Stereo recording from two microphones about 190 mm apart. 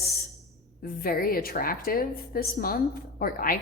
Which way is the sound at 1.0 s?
50° left (ahead or behind).